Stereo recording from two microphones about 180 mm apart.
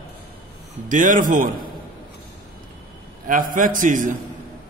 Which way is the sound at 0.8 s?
45° right (ahead or behind).